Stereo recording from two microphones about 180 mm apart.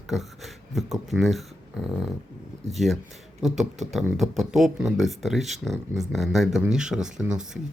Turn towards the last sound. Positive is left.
turn(degrees=-5)  # may be behind; listen again after turning